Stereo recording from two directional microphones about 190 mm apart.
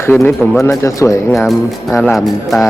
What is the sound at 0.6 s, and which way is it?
Speech, 15° left (ahead or behind).